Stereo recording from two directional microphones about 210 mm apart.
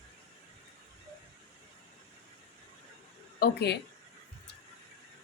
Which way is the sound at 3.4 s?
50° left (ahead or behind).